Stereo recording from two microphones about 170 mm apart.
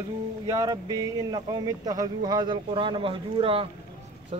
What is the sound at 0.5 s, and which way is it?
Speech, 20° right (ahead or behind).